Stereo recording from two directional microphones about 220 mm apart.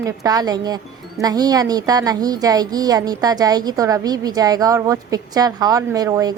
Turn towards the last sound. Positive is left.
turn(degrees=-15)  # may be behind; listen again after turning